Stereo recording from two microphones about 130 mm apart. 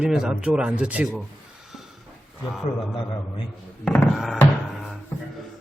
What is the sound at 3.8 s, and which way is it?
Speech, 5° left (ahead or behind).